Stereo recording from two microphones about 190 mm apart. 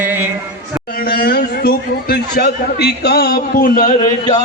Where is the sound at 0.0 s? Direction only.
10° right (ahead or behind).